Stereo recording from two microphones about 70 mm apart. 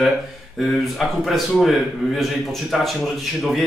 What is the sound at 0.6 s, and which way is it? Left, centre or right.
Speech, centre.